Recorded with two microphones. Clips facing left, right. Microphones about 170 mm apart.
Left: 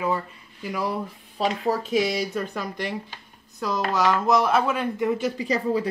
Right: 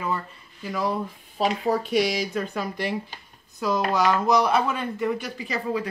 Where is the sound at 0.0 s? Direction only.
10° left (ahead or behind).